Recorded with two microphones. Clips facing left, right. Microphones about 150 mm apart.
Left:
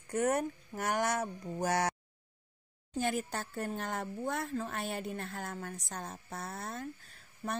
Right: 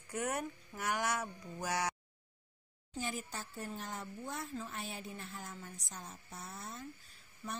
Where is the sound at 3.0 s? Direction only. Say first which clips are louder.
Left 8 dB; 65° left (ahead or behind).